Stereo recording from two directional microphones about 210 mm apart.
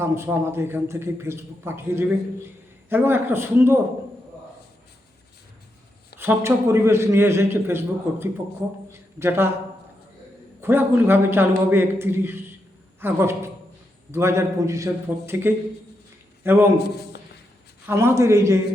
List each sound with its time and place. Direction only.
0.0 s a man's voice: 15° right (ahead or behind)
6.1 s a man's voice: 10° right (ahead or behind)
10.6 s a man's voice: 10° right (ahead or behind)
16.7 s a man's voice: 50° left (ahead or behind)
17.8 s a man's voice: 15° right (ahead or behind)